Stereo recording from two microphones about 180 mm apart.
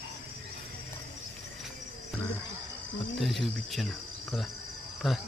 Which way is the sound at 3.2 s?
Centre (ahead or behind).